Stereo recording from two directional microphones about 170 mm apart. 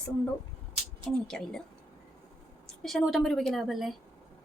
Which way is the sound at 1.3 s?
5° left (ahead or behind).